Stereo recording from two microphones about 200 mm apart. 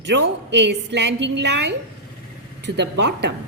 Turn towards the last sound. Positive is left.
turn(degrees=-55)  # may be behind; listen again after turning